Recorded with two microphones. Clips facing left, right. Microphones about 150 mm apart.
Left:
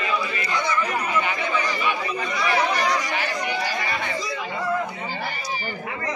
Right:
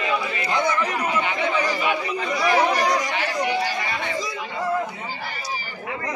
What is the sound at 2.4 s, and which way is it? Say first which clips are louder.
Speech: right 3 dB; 40° right (ahead or behind).